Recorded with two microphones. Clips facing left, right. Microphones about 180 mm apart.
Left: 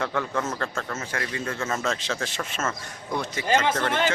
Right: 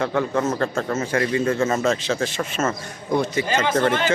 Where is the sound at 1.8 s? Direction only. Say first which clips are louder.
Right 7 dB; 5° right (ahead or behind).